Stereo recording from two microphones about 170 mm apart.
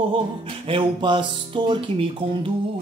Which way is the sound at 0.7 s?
30° right (ahead or behind).